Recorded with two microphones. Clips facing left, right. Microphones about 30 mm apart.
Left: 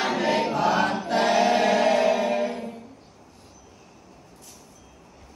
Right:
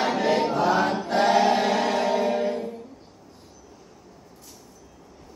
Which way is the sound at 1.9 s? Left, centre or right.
Left.